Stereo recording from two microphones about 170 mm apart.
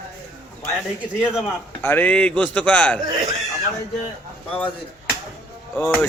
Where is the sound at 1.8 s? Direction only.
10° left (ahead or behind).